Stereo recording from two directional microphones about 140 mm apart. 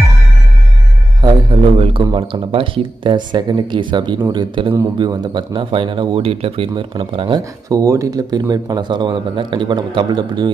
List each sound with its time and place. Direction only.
1.2 s speech: 40° right (ahead or behind)